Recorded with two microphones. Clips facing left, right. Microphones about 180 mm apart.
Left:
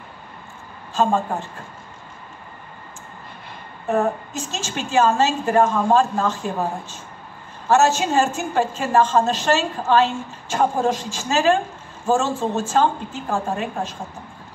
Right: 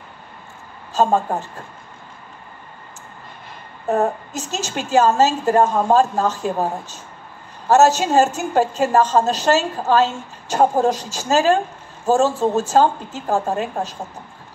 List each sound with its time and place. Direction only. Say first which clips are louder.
0.9 s a woman's voice: right 2 dB; 40° right (ahead or behind)
3.9 s a woman's voice: right 1 dB; 40° right (ahead or behind)
7.6 s a woman's voice: right 3 dB; 40° right (ahead or behind)